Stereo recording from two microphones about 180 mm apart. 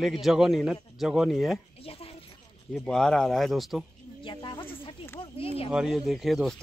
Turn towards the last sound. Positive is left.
turn(degrees=0)  # may be behind; listen again after turning